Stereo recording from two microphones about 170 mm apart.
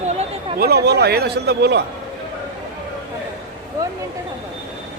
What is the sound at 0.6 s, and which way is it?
A man's voice, 70° right (ahead or behind).